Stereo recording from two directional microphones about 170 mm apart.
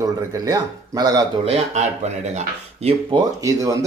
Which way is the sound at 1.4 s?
40° right (ahead or behind).